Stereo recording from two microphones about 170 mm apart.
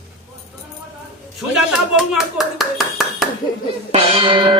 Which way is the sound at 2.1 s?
Centre (ahead or behind).